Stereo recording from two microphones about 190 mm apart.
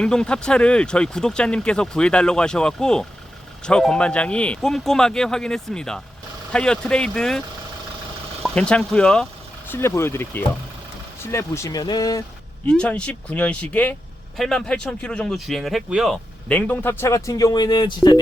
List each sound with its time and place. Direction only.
0.0 s speech: 5° left (ahead or behind)
8.4 s speech: 5° left (ahead or behind)
12.6 s speech: 5° left (ahead or behind); by 18.2 s 20° left (ahead or behind)